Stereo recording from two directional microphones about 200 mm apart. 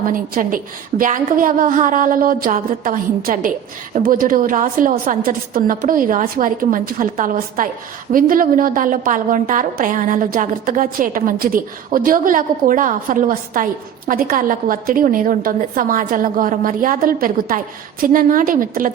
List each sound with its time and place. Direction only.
0.1 s a woman's voice: 45° right (ahead or behind)